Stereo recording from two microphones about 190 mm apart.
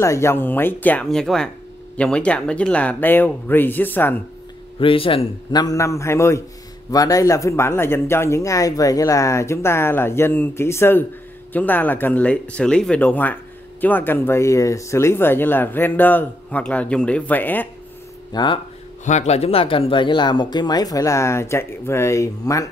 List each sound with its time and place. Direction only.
0.0 s speech: 15° left (ahead or behind)
4.7 s speech: 30° left (ahead or behind); by 17.6 s 10° left (ahead or behind)
18.3 s speech: 25° left (ahead or behind)
19.0 s speech: 35° left (ahead or behind); by 22.7 s 15° left (ahead or behind)